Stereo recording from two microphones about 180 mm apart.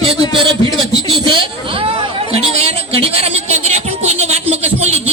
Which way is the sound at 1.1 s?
25° right (ahead or behind).